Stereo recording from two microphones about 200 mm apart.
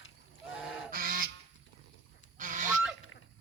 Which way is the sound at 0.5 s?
5° right (ahead or behind).